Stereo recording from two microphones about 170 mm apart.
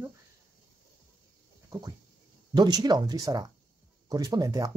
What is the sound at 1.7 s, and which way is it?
Speech, 20° right (ahead or behind).